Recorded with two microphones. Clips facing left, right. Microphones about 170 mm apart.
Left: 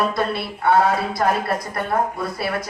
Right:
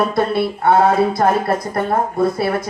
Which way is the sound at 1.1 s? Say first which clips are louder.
Right 5 dB; 25° right (ahead or behind).